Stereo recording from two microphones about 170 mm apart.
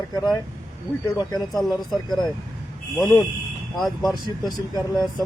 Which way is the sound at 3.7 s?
Centre (ahead or behind).